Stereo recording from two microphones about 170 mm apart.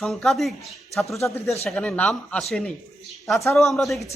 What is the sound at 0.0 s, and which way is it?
Speech, centre (ahead or behind).